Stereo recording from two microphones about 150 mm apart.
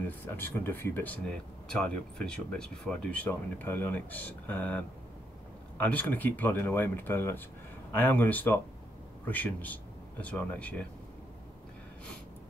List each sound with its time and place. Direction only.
0.0 s speech: 10° left (ahead or behind)